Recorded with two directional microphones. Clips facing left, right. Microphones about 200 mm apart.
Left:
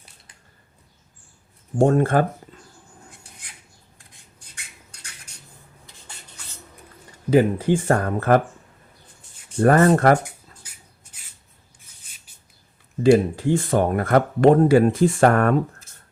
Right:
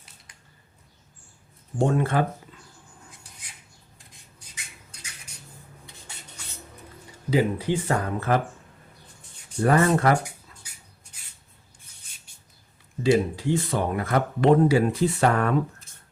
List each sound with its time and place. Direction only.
1.8 s speech: 45° left (ahead or behind)
3.9 s a sound: centre (ahead or behind)
6.4 s music: centre (ahead or behind)
7.3 s speech: 50° left (ahead or behind)
9.6 s speech: 50° left (ahead or behind)
10.2 s a sound: centre (ahead or behind)
13.0 s speech: 50° left (ahead or behind)